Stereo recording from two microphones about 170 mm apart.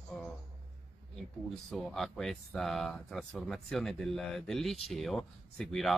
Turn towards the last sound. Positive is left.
turn(degrees=0)  # may be behind; listen again after turning